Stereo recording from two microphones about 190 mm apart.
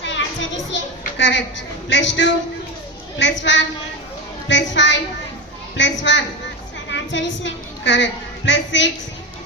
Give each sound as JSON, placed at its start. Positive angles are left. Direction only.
{"t": 0.0, "sound": "children playing", "side_deg": 70}
{"t": 1.2, "sound": "a woman's voice", "side_deg": 70}